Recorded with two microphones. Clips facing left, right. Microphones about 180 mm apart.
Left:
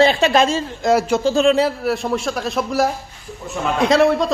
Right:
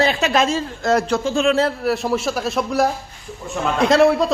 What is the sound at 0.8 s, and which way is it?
Speech, 10° left (ahead or behind).